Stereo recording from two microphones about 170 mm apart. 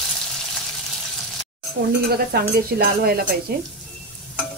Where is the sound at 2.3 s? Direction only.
65° right (ahead or behind).